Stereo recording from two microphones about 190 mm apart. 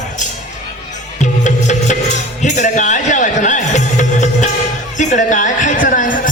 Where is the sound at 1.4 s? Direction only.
40° left (ahead or behind).